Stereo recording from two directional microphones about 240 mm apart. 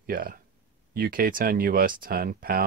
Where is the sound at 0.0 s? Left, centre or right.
Right.